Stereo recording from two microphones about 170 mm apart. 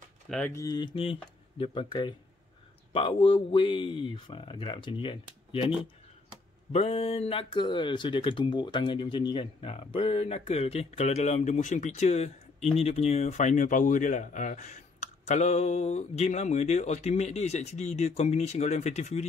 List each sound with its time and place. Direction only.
0.3 s speech: 10° left (ahead or behind); by 5.7 s 30° left (ahead or behind)
6.7 s speech: 35° left (ahead or behind)